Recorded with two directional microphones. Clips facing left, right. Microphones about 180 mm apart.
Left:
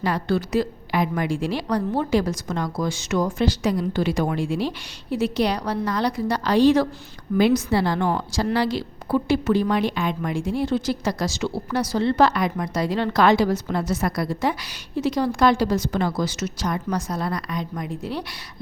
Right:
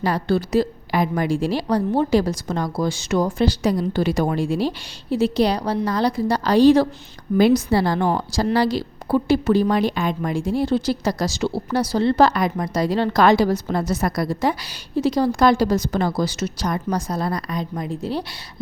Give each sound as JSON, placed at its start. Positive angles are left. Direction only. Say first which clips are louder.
{"t": 0.0, "sound": "a woman's voice", "louder": "right 2 dB", "side_deg": -35}